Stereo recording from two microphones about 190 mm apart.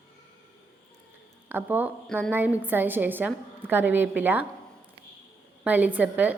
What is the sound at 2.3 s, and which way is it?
A woman's voice, 10° right (ahead or behind).